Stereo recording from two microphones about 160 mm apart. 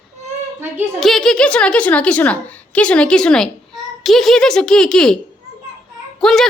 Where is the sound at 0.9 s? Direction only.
Centre (ahead or behind).